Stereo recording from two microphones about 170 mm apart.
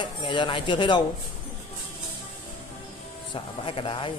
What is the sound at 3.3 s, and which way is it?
Speech, 30° left (ahead or behind).